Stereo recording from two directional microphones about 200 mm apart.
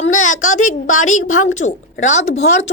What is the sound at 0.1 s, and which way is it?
A woman's voice, 40° left (ahead or behind).